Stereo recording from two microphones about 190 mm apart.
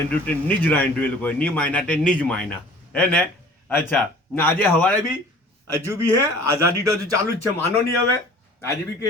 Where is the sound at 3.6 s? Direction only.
10° left (ahead or behind).